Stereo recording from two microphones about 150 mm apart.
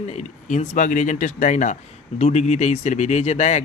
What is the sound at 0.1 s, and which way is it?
Speech, 50° left (ahead or behind).